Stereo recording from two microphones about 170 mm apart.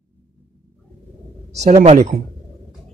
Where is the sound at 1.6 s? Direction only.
40° right (ahead or behind).